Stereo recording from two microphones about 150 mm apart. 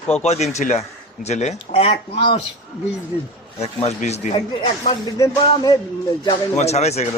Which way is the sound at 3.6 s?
45° left (ahead or behind).